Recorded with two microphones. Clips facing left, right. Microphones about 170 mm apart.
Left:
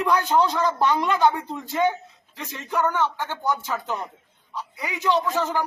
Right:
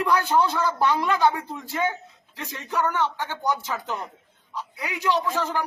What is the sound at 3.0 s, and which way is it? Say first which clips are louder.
Speech: left 1 dB; 15° right (ahead or behind).